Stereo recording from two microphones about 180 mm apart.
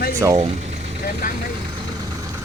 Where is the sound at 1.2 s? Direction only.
50° left (ahead or behind).